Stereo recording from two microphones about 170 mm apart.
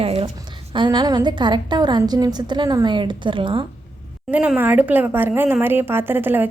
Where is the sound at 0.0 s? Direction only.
35° right (ahead or behind).